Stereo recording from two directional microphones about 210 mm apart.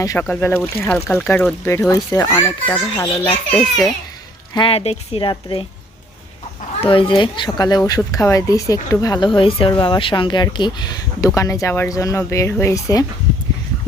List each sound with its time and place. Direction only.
0.0 s speech: 15° left (ahead or behind)
3.5 s a child's voice: centre (ahead or behind)
4.5 s speech: 25° left (ahead or behind)
6.8 s speech: 25° left (ahead or behind)